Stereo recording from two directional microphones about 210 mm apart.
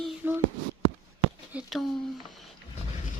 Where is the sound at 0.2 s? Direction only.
10° right (ahead or behind).